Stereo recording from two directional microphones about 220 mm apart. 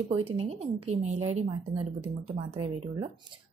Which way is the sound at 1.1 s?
70° right (ahead or behind).